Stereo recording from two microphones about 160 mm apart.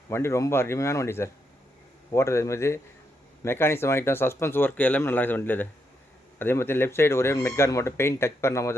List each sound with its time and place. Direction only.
0.1 s speech: 15° left (ahead or behind)